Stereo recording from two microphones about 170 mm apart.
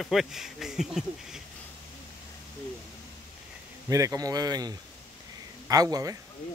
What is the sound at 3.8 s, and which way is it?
Speech, 20° right (ahead or behind).